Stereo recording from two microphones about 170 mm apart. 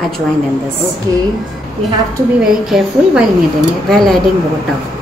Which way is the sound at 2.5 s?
Centre (ahead or behind).